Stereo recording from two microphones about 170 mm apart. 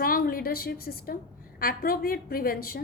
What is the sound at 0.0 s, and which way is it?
A woman's voice, 60° left (ahead or behind).